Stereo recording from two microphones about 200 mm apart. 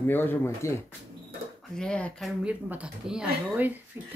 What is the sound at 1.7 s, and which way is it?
Speech, 5° left (ahead or behind).